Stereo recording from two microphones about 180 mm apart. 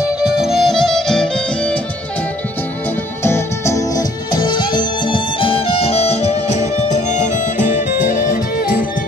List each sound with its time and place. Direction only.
0.2 s music: centre (ahead or behind)
3.3 s music: 15° left (ahead or behind); by 7.6 s 40° left (ahead or behind)